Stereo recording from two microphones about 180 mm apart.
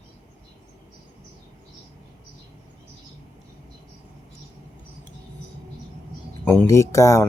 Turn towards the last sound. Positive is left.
turn(degrees=15)  # may be behind; listen again after turning